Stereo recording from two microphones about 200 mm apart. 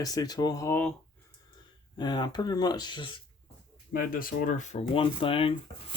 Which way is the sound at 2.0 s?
20° left (ahead or behind).